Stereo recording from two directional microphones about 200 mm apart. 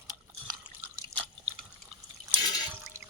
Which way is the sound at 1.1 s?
15° right (ahead or behind).